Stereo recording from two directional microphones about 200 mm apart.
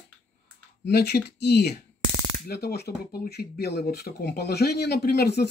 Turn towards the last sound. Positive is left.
turn(degrees=55)  # may be behind; listen again after turning